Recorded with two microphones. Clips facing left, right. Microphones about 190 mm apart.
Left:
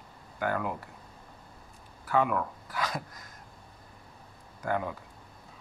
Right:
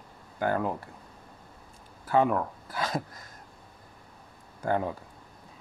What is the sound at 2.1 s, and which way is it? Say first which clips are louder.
Speech: right 3 dB; 35° right (ahead or behind).